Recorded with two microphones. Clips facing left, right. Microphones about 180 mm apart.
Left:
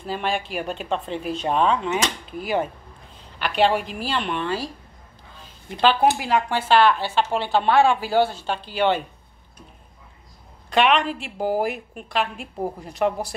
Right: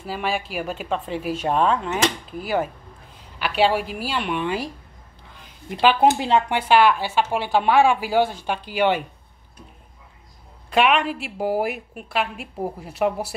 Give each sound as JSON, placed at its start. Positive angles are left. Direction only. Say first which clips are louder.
{"t": 0.0, "sound": "a woman's voice", "louder": "even", "side_deg": -5}
{"t": 5.4, "sound": "a sound", "louder": "right 1 dB", "side_deg": -15}
{"t": 6.0, "sound": "speech", "louder": "right 2 dB", "side_deg": -25}
{"t": 6.7, "sound": "a woman's voice", "louder": "right 1 dB", "side_deg": -10}
{"t": 10.7, "sound": "a woman's voice", "louder": "even", "side_deg": -5}